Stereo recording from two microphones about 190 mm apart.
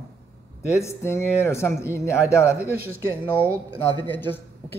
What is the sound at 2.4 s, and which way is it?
Speech, 5° right (ahead or behind).